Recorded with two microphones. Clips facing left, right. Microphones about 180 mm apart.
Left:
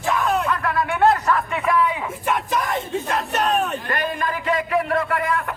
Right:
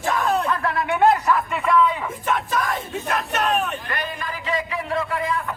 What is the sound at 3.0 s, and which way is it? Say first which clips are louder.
Speech: right 1 dB; 35° left (ahead or behind).